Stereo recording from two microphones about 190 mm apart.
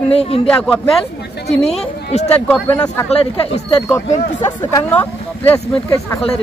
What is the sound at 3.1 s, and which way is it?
Speech, 35° left (ahead or behind).